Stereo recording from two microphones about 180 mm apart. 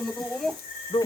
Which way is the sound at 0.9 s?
35° left (ahead or behind).